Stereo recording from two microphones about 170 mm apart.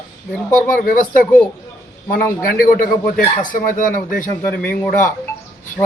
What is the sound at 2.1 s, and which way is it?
A man's voice, 55° left (ahead or behind).